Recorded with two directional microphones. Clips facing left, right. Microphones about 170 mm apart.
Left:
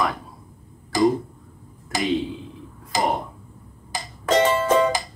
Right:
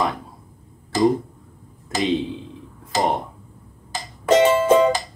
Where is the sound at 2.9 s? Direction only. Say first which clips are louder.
Right 2 dB; 15° left (ahead or behind).